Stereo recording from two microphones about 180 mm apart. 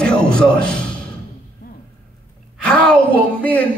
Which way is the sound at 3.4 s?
10° left (ahead or behind).